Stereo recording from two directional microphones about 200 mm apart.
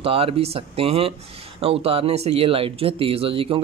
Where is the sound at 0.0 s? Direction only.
30° right (ahead or behind).